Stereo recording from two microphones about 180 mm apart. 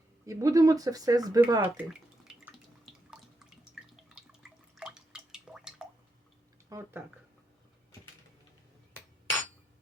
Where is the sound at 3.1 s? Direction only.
5° right (ahead or behind).